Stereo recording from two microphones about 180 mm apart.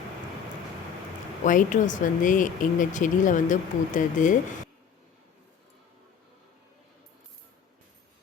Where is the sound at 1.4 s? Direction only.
45° left (ahead or behind).